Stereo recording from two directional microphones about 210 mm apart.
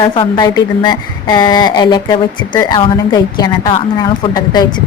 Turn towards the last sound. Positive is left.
turn(degrees=20)  # may be behind; listen again after turning